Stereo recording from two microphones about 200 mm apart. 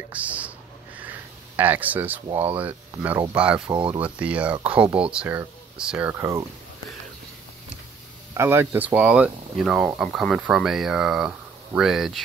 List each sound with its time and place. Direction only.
0.1 s a sound: 5° right (ahead or behind)
1.6 s speech: 10° right (ahead or behind)
3.6 s speech: 25° right (ahead or behind)
4.0 s speech: 5° right (ahead or behind)
8.4 s speech: 10° right (ahead or behind)